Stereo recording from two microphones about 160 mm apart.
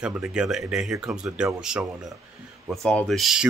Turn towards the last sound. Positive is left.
turn(degrees=0)  # may be behind; listen again after turning